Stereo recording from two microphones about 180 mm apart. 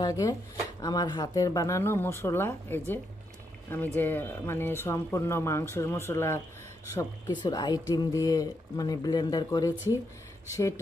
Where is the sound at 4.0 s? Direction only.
10° left (ahead or behind).